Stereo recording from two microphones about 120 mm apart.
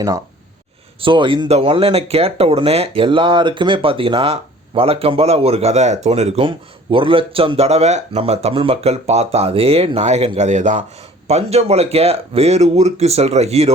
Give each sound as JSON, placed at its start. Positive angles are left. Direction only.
{"t": 1.0, "sound": "speech", "side_deg": -45}
{"t": 1.5, "sound": "speech", "side_deg": -55}
{"t": 6.9, "sound": "speech", "side_deg": -45}
{"t": 11.3, "sound": "speech", "side_deg": -60}